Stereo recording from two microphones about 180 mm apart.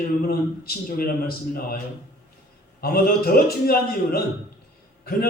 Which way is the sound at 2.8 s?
55° left (ahead or behind).